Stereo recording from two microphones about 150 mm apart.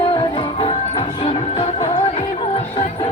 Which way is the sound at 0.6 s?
40° left (ahead or behind).